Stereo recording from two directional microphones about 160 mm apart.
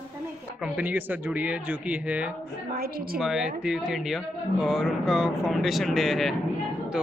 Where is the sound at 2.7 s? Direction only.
70° right (ahead or behind).